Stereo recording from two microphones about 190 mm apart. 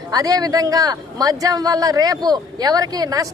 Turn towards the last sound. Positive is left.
turn(degrees=-20)  # may be behind; listen again after turning